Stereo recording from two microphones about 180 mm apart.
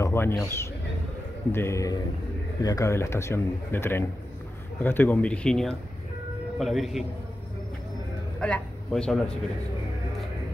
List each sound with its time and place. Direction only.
0.0 s a man's voice: 15° left (ahead or behind)
8.4 s a man's voice: 5° left (ahead or behind)